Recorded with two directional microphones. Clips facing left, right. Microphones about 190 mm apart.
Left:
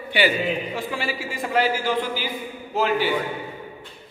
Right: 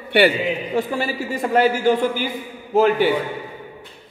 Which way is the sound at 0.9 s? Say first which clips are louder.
Right 5 dB; 40° right (ahead or behind).